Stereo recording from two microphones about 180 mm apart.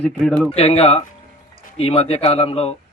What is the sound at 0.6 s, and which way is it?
Speech, 35° left (ahead or behind).